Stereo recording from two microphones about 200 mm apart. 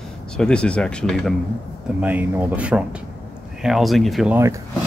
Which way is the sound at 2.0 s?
10° right (ahead or behind).